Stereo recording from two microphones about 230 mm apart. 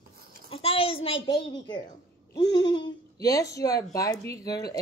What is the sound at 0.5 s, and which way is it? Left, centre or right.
A child's voice, left.